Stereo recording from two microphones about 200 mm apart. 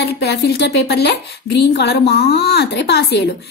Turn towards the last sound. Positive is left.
turn(degrees=55)  # may be behind; listen again after turning